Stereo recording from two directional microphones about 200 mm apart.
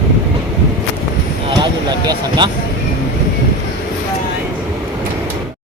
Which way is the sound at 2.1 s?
25° right (ahead or behind).